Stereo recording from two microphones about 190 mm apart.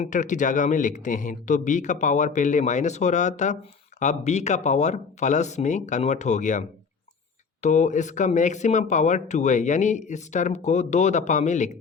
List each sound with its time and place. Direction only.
0.0 s speech: 40° left (ahead or behind)